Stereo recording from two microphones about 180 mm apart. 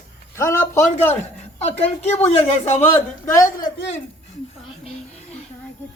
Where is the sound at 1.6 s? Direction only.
40° left (ahead or behind).